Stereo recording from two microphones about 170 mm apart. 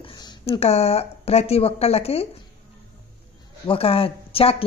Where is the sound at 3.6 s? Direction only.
35° left (ahead or behind).